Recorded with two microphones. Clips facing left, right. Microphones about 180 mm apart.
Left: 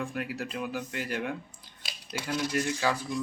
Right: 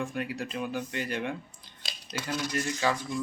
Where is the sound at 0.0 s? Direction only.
5° left (ahead or behind).